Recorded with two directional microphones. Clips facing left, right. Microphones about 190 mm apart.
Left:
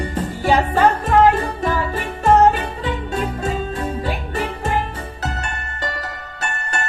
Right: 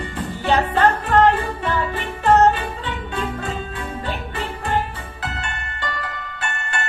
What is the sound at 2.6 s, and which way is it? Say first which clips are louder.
Music: left 3 dB; 40° left (ahead or behind).